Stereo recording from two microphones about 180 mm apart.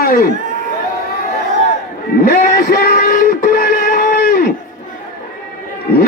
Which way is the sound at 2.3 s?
50° left (ahead or behind).